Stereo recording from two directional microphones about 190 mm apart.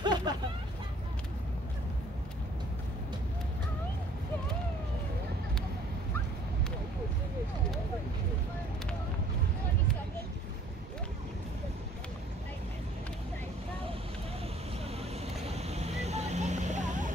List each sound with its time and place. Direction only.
0.0 s hubbub: 20° right (ahead or behind)
15.0 s vehicle: 35° right (ahead or behind)